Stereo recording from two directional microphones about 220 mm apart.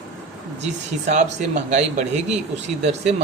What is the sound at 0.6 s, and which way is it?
Speech, 30° right (ahead or behind).